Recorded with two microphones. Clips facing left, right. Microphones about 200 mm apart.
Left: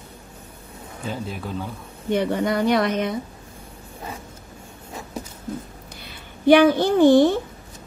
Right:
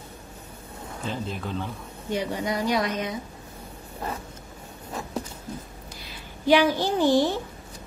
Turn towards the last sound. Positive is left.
turn(degrees=55)  # may be behind; listen again after turning